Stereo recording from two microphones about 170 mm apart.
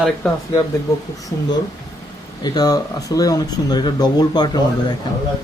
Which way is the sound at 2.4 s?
25° left (ahead or behind).